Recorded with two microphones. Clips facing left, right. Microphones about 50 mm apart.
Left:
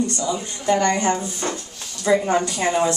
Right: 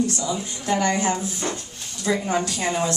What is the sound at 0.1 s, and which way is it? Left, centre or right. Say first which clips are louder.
Speech: left 2 dB; centre.